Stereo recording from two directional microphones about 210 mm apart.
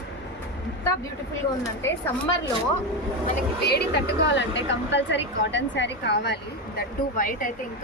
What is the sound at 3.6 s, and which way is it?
A woman's voice, 50° left (ahead or behind).